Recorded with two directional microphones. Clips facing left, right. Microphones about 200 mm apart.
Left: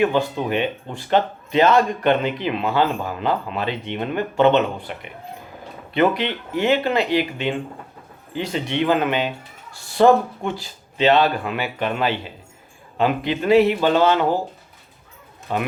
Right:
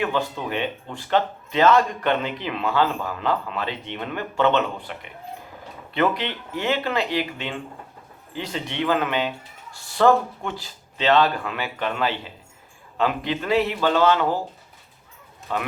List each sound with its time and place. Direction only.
0.0 s speech: 20° left (ahead or behind)
15.5 s speech: 15° left (ahead or behind)